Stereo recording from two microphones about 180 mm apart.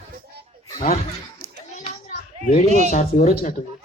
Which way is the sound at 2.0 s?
50° left (ahead or behind).